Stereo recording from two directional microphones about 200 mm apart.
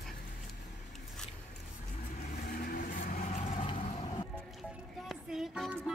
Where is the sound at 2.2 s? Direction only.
45° left (ahead or behind); by 3.7 s 30° left (ahead or behind).